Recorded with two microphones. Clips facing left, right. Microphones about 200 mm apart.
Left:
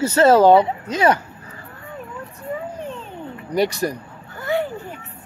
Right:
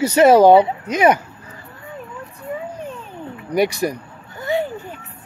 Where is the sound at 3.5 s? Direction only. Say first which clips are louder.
Right 2 dB; 10° right (ahead or behind).